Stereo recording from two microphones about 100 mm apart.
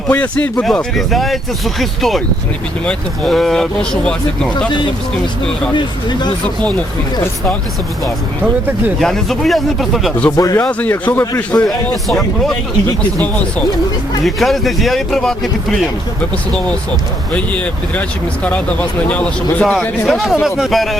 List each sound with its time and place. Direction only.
0.1 s speech: 15° left (ahead or behind)
0.6 s speech: 5° left (ahead or behind)
5.7 s speech: 45° left (ahead or behind)
9.0 s speech: 5° left (ahead or behind)
10.3 s speech: 35° left (ahead or behind)
10.7 s a man's voice: 15° left (ahead or behind)
12.0 s speech: 5° left (ahead or behind)
14.3 s speech: centre (ahead or behind)
18.4 s speech: 15° left (ahead or behind)
20.1 s speech: centre (ahead or behind)